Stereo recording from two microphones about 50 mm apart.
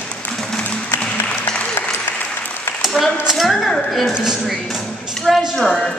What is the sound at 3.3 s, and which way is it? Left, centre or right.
Speech, centre.